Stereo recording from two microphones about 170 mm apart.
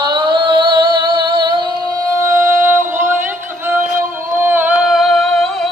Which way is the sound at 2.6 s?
10° right (ahead or behind).